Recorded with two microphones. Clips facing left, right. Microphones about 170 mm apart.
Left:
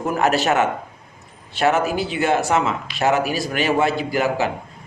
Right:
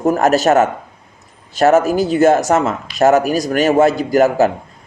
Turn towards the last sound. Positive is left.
turn(degrees=-45)  # may be behind; listen again after turning